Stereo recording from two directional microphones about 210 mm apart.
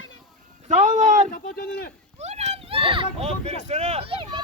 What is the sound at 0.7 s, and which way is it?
Speech, 35° right (ahead or behind).